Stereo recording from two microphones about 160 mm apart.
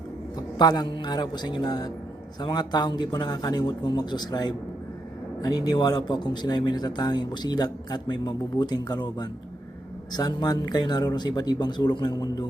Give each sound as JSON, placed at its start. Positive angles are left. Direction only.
{"t": 0.3, "sound": "a man's voice", "side_deg": 25}